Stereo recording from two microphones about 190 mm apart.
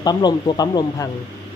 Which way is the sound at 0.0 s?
20° left (ahead or behind).